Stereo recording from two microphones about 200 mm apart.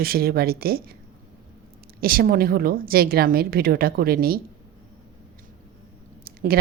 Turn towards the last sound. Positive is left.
turn(degrees=-45)  # may be behind; listen again after turning